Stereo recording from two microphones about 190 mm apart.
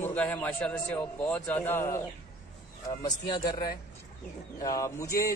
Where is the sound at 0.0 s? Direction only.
10° left (ahead or behind).